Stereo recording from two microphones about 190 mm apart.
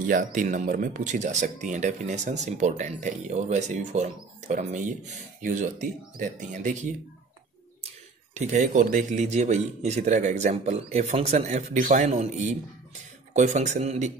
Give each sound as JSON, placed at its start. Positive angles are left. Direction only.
{"t": 0.0, "sound": "speech", "side_deg": -45}
{"t": 8.4, "sound": "speech", "side_deg": -40}